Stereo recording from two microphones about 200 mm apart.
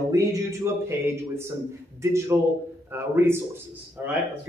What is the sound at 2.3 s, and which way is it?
A man's voice, 10° right (ahead or behind).